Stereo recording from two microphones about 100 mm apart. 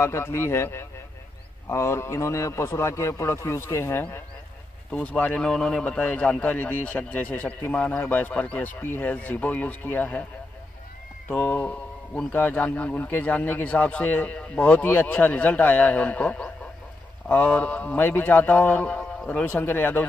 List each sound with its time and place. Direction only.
0.0 s a man's voice: 25° left (ahead or behind)
4.9 s a man's voice: 10° left (ahead or behind)
11.2 s a man's voice: 20° left (ahead or behind)